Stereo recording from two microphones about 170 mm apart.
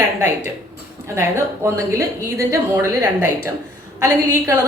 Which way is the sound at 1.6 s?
15° right (ahead or behind).